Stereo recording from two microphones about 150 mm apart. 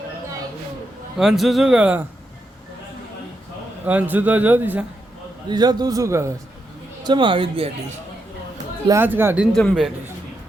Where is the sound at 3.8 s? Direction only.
10° right (ahead or behind).